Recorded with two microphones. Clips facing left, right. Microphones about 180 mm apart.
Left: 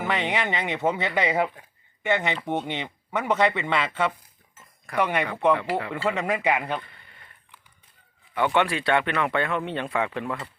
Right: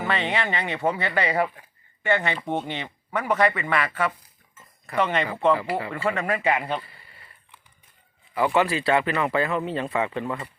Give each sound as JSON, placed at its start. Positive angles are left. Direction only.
{"t": 0.0, "sound": "speech", "side_deg": 15}
{"t": 4.9, "sound": "speech", "side_deg": 10}
{"t": 5.5, "sound": "speech", "side_deg": 0}
{"t": 6.1, "sound": "speech", "side_deg": 20}
{"t": 6.7, "sound": "a sound", "side_deg": -5}
{"t": 8.4, "sound": "speech", "side_deg": 0}